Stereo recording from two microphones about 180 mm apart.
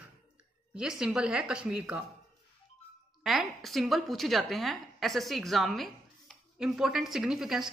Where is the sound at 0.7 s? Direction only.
5° right (ahead or behind).